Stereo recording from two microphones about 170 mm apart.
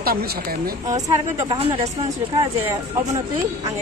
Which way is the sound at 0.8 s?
20° right (ahead or behind).